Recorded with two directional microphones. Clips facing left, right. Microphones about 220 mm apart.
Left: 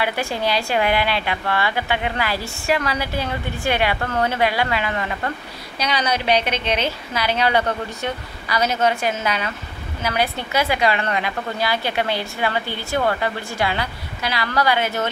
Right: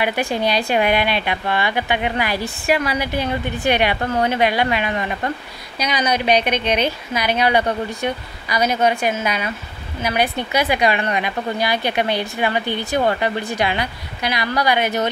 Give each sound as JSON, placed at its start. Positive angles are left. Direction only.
{"t": 0.0, "sound": "a woman's voice", "side_deg": -15}